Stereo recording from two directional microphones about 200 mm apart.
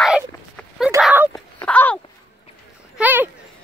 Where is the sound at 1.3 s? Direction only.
10° left (ahead or behind).